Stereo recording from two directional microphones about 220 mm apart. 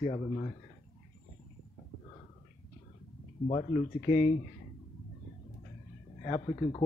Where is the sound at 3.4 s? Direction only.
30° left (ahead or behind).